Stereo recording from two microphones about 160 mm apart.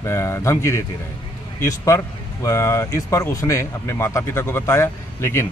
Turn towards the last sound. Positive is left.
turn(degrees=15)  # may be behind; listen again after turning